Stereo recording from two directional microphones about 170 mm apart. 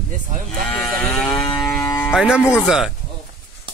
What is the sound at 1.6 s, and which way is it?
Music, centre (ahead or behind).